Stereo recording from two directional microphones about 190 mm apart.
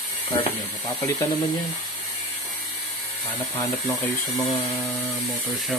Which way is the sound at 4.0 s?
Centre (ahead or behind).